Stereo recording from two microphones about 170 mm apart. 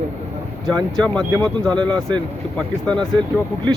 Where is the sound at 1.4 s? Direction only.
5° left (ahead or behind).